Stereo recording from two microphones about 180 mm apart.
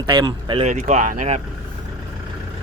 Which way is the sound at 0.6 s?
40° right (ahead or behind).